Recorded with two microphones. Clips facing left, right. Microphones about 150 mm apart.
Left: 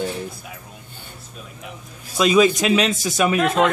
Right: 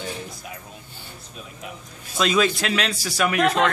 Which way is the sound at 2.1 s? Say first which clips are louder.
Left 5 dB; 15° left (ahead or behind).